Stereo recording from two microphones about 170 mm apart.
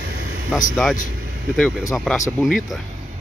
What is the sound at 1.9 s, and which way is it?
Speech, centre (ahead or behind).